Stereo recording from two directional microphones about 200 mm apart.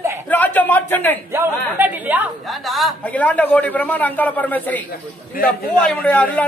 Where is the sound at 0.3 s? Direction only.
10° left (ahead or behind).